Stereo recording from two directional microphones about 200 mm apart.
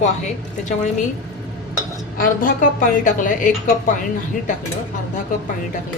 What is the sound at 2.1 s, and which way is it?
A woman's voice, 45° left (ahead or behind).